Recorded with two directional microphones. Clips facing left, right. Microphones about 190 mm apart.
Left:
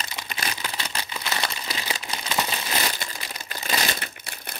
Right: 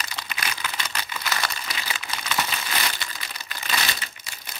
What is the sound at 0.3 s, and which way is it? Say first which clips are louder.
Crumpling: left 1 dB; 35° left (ahead or behind).